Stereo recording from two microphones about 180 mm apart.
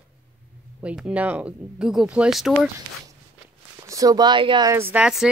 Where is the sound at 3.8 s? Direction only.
20° right (ahead or behind).